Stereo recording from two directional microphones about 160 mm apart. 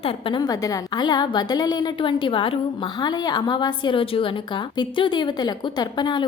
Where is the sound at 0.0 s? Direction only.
35° left (ahead or behind).